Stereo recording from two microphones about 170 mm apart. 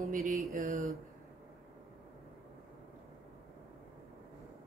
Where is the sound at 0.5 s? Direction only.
60° right (ahead or behind).